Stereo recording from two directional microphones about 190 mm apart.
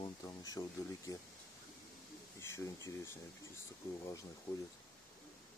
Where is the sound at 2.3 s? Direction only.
15° left (ahead or behind).